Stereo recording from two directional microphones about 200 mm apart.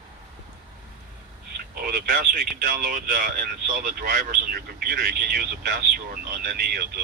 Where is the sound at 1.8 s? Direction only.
45° right (ahead or behind).